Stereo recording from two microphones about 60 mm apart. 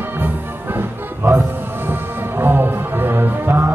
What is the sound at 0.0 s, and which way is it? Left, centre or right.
Music, right.